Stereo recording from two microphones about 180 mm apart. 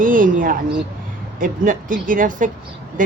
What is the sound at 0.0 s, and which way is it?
Speech, 50° right (ahead or behind).